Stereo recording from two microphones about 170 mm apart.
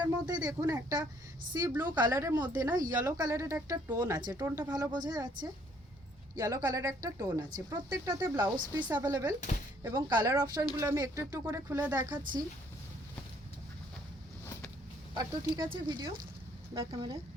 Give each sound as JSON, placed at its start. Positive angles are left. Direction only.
{"t": 0.0, "sound": "speech", "side_deg": -25}
{"t": 4.7, "sound": "speech", "side_deg": -25}
{"t": 15.1, "sound": "speech", "side_deg": -25}